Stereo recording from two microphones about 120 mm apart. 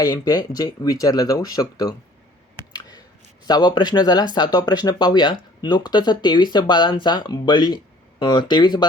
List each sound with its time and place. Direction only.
0.0 s speech: 30° left (ahead or behind)
3.4 s speech: 35° left (ahead or behind)